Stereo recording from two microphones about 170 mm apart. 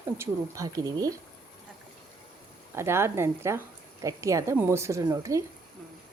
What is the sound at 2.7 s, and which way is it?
A woman's voice, 15° right (ahead or behind).